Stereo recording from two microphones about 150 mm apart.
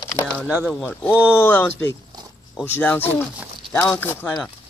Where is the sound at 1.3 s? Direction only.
15° left (ahead or behind).